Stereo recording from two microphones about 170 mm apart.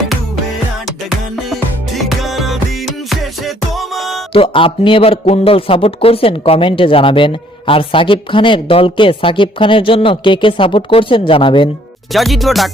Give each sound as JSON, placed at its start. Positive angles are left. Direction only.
{"t": 2.0, "sound": "music", "side_deg": 0}
{"t": 4.3, "sound": "a man's voice", "side_deg": 30}
{"t": 12.1, "sound": "speech", "side_deg": 0}